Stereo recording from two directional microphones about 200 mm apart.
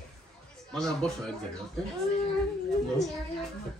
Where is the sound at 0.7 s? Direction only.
Centre (ahead or behind).